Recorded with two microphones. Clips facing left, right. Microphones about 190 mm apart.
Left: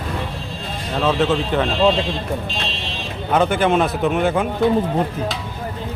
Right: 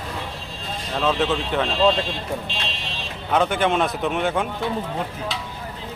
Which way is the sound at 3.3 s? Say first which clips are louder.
Left 3 dB; centre (ahead or behind).